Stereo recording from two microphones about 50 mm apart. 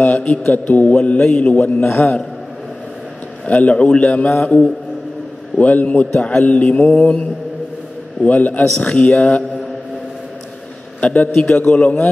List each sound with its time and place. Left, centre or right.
0.1 s a man's voice: left
1.2 s a man's voice: centre
1.5 s a man's voice: left
3.4 s a man's voice: left
6.1 s a man's voice: centre
6.4 s a man's voice: left
8.3 s a man's voice: left
11.0 s a man's voice: left